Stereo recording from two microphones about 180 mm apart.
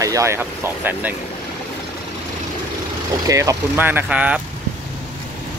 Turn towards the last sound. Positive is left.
turn(degrees=-5)  # may be behind; listen again after turning